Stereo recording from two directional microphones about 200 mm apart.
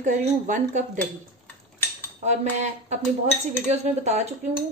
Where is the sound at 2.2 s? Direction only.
35° right (ahead or behind).